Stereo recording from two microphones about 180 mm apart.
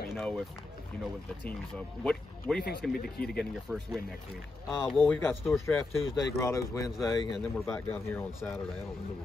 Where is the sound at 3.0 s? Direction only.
60° left (ahead or behind).